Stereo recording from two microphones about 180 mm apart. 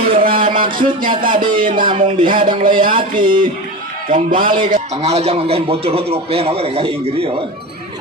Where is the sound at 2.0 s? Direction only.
30° right (ahead or behind).